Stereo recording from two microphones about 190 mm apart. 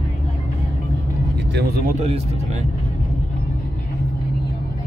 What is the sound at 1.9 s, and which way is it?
Speech, 35° right (ahead or behind).